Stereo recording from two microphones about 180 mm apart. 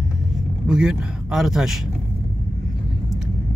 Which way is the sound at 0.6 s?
5° right (ahead or behind).